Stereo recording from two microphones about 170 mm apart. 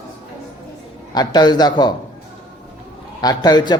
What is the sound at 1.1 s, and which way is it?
Speech, 25° left (ahead or behind).